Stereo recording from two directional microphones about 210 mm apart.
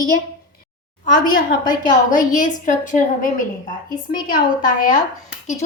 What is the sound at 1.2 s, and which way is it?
A woman's voice, 40° left (ahead or behind).